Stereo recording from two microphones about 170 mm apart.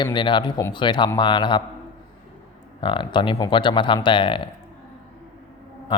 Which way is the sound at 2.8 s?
30° left (ahead or behind).